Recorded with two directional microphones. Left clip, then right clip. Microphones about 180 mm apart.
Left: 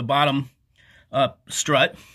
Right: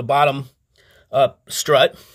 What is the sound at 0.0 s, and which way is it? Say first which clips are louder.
Speech: right 4 dB; 20° right (ahead or behind).